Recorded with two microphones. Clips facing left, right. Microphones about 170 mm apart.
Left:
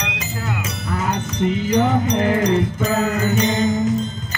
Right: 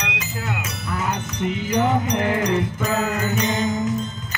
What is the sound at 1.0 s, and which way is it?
Music, 35° left (ahead or behind).